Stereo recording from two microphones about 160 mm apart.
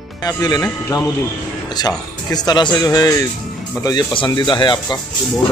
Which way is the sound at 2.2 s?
25° left (ahead or behind).